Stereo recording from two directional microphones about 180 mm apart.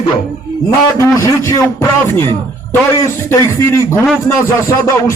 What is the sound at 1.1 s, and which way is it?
Speech, 15° left (ahead or behind).